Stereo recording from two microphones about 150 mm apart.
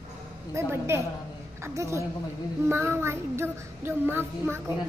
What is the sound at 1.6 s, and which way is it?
Speech, 20° right (ahead or behind).